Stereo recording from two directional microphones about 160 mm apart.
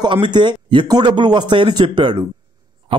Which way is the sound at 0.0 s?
30° right (ahead or behind).